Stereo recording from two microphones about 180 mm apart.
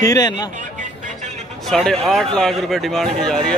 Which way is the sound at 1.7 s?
Centre (ahead or behind).